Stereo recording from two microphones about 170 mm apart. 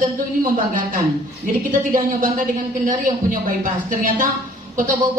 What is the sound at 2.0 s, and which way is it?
A woman's voice, 50° right (ahead or behind).